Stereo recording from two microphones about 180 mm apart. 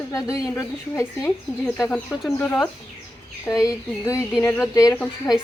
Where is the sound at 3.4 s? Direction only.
20° left (ahead or behind).